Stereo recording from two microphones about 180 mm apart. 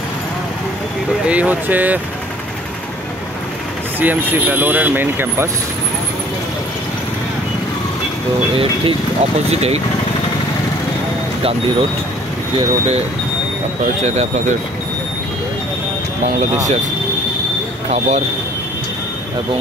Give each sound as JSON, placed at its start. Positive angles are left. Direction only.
{"t": 1.2, "sound": "speech", "side_deg": -5}
{"t": 4.0, "sound": "speech", "side_deg": -10}
{"t": 8.5, "sound": "speech", "side_deg": -35}
{"t": 12.5, "sound": "speech", "side_deg": -35}
{"t": 14.0, "sound": "speech", "side_deg": -40}
{"t": 17.8, "sound": "speech", "side_deg": -35}